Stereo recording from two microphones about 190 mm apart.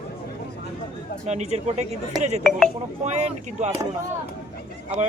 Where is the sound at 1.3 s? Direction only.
35° right (ahead or behind).